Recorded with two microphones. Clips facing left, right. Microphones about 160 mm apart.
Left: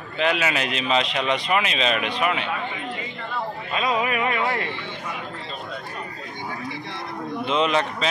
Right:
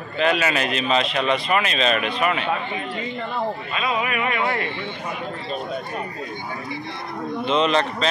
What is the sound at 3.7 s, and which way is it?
Speech, 35° left (ahead or behind).